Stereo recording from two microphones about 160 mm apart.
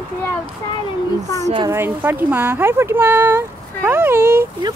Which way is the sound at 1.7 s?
15° right (ahead or behind).